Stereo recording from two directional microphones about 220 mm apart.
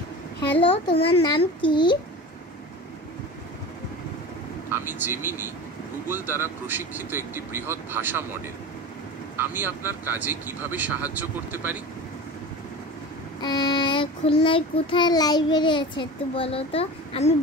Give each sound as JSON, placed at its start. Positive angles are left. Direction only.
{"t": 0.6, "sound": "child singing", "side_deg": 25}
{"t": 4.6, "sound": "speech", "side_deg": -10}
{"t": 9.4, "sound": "speech", "side_deg": -10}
{"t": 13.4, "sound": "child singing", "side_deg": 20}